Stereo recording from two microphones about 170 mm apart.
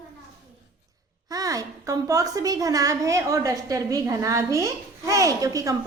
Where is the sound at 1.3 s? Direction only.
20° right (ahead or behind).